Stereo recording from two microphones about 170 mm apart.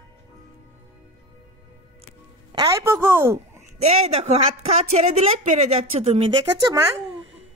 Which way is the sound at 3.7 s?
40° right (ahead or behind).